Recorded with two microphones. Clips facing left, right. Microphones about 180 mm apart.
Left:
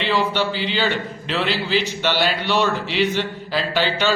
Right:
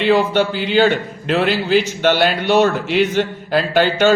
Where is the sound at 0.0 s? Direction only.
50° right (ahead or behind).